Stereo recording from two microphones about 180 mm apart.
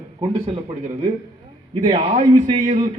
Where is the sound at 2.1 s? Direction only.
40° right (ahead or behind).